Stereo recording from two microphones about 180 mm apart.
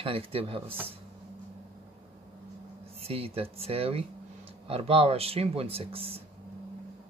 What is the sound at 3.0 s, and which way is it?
Speech, 35° right (ahead or behind).